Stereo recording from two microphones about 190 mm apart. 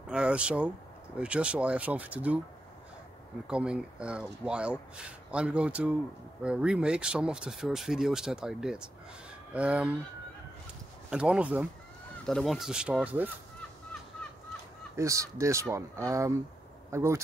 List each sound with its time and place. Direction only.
0.1 s speech: 5° right (ahead or behind)
3.4 s speech: 5° right (ahead or behind)
11.1 s speech: 5° right (ahead or behind)
15.0 s speech: 15° right (ahead or behind)